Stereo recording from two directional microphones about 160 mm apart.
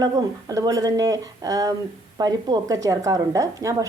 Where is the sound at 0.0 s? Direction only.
25° right (ahead or behind).